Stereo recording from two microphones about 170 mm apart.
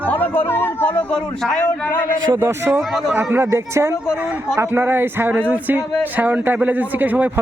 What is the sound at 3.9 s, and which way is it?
Speech, 15° left (ahead or behind).